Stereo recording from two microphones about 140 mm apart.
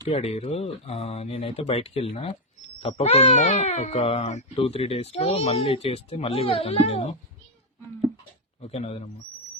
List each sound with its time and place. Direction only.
0.1 s speech: 50° left (ahead or behind)
8.6 s speech: 45° left (ahead or behind)